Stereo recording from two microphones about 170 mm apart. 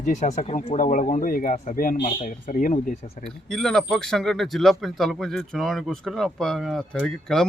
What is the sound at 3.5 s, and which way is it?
Speech, 5° left (ahead or behind).